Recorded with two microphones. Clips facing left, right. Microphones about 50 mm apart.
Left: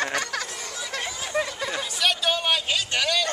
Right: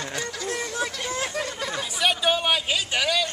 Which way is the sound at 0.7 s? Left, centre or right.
Right.